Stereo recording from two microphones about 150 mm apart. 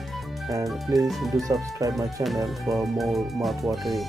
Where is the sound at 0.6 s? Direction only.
Centre (ahead or behind).